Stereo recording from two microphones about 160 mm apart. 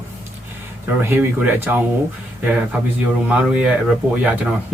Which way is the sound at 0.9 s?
10° right (ahead or behind).